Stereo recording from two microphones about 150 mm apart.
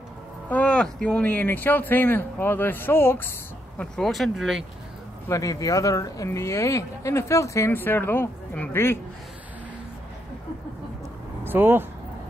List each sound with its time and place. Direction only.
0.5 s speech: 10° left (ahead or behind)
5.3 s speech: 25° left (ahead or behind)
11.4 s speech: 15° right (ahead or behind)